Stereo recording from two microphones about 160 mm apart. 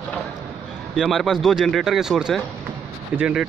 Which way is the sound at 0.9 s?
Centre (ahead or behind).